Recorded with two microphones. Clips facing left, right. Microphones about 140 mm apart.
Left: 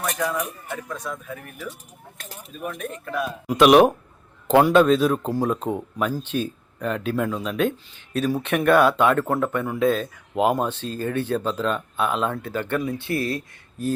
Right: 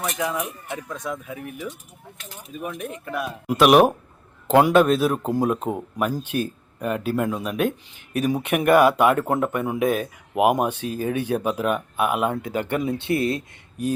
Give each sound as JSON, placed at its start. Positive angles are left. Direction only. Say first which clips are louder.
{"t": 0.2, "sound": "speech", "louder": "even", "side_deg": -10}
{"t": 0.9, "sound": "speech", "louder": "right 2 dB", "side_deg": -20}
{"t": 2.1, "sound": "speech", "louder": "left 2 dB", "side_deg": 45}
{"t": 2.5, "sound": "speech", "louder": "even", "side_deg": -15}